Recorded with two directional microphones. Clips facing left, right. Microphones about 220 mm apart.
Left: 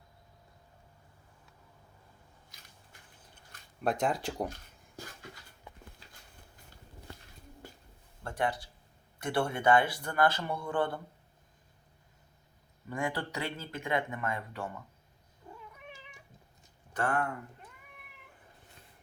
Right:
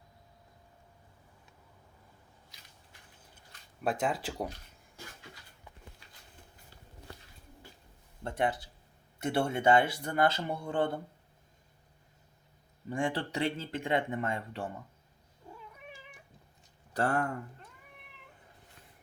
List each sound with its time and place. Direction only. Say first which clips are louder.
3.8 s speech: left 1 dB; 5° right (ahead or behind)
8.2 s speech: right 2 dB; 25° right (ahead or behind)
12.9 s speech: right 2 dB; 30° right (ahead or behind)
15.4 s cat: even; 5° left (ahead or behind)
16.9 s speech: right 2 dB; 40° right (ahead or behind)